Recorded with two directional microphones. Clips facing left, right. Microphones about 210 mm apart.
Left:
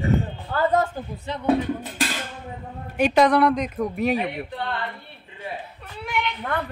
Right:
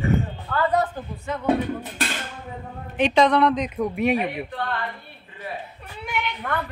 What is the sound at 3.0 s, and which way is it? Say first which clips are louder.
Speech: left 1 dB; 5° left (ahead or behind).